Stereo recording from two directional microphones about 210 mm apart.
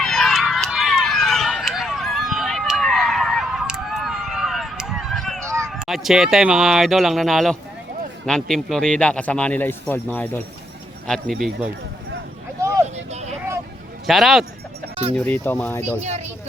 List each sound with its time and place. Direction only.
0.0 s run: centre (ahead or behind)
5.6 s a man's voice: centre (ahead or behind)
12.6 s vehicle: 15° right (ahead or behind)
13.1 s vehicle: 30° right (ahead or behind)
14.1 s a man's voice: centre (ahead or behind)
16.0 s speech: 35° right (ahead or behind)